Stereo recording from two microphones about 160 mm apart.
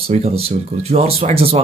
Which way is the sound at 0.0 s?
40° right (ahead or behind).